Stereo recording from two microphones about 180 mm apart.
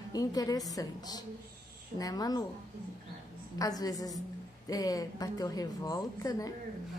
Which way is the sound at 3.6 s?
20° left (ahead or behind).